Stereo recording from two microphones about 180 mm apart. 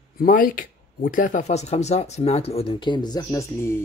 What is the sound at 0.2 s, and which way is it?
Speech, 50° left (ahead or behind).